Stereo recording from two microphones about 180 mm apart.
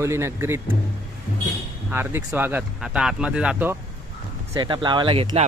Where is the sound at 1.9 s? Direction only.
10° right (ahead or behind).